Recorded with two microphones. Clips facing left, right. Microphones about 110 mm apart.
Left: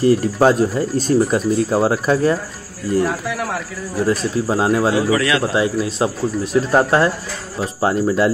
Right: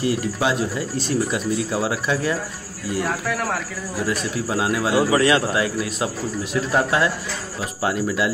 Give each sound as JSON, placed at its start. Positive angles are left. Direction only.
{"t": 0.0, "sound": "speech", "side_deg": 40}
{"t": 4.0, "sound": "speech", "side_deg": 35}
{"t": 4.9, "sound": "a man's voice", "side_deg": -30}
{"t": 5.5, "sound": "a man's voice", "side_deg": 30}